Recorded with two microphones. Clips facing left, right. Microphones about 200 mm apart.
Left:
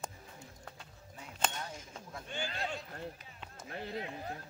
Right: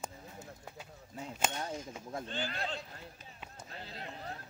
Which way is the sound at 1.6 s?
40° right (ahead or behind).